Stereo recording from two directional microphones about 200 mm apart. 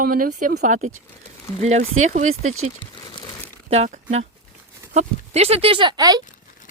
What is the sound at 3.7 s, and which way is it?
Speech, 30° right (ahead or behind).